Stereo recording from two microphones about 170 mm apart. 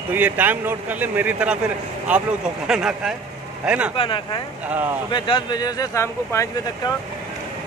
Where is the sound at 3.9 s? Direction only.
30° left (ahead or behind).